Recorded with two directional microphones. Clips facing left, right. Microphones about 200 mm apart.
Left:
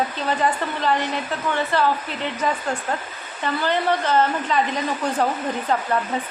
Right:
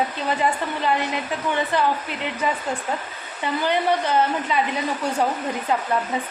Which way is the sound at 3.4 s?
15° right (ahead or behind).